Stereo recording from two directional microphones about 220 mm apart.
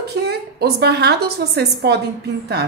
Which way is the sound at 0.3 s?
45° right (ahead or behind).